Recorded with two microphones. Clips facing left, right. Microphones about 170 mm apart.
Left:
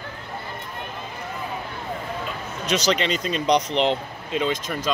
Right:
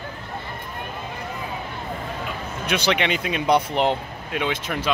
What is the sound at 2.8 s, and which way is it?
Speech, 60° right (ahead or behind).